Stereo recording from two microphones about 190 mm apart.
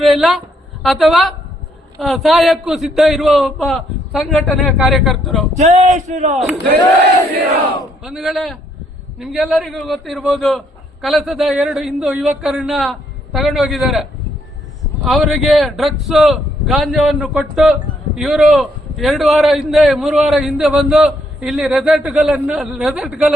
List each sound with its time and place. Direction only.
0.0 s a woman's voice: centre (ahead or behind)
5.5 s speech: 35° right (ahead or behind)
8.0 s a man's voice: centre (ahead or behind)